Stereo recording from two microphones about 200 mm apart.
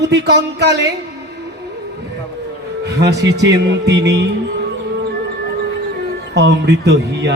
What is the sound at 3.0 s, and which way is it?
Speech, 55° right (ahead or behind).